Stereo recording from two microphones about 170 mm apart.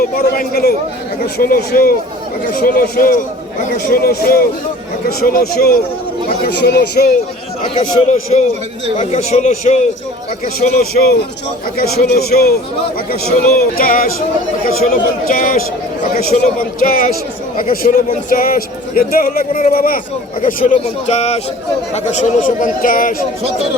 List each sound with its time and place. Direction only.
0.0 s a man's voice: 60° left (ahead or behind)
6.5 s speech: 75° left (ahead or behind)
7.7 s speech: 45° left (ahead or behind)
10.4 s a man's voice: 55° left (ahead or behind)
13.7 s a man's voice: 55° left (ahead or behind)